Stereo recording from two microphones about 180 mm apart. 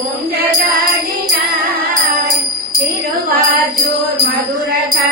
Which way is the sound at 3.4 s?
55° right (ahead or behind).